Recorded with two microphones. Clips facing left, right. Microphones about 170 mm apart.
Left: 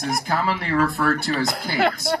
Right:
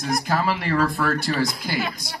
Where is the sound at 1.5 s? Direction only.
70° left (ahead or behind).